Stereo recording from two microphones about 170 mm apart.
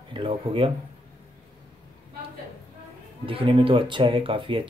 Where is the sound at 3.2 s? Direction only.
30° right (ahead or behind).